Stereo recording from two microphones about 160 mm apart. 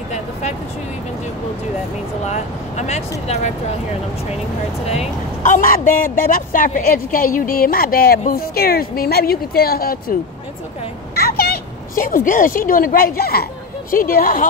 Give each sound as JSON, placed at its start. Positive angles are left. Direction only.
{"t": 0.1, "sound": "a sound", "side_deg": 45}
{"t": 2.2, "sound": "speech", "side_deg": 45}
{"t": 4.8, "sound": "a man's voice", "side_deg": 40}
{"t": 11.1, "sound": "a woman's voice", "side_deg": 70}